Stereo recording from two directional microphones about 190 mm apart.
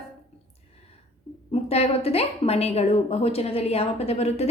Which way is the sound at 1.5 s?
35° left (ahead or behind).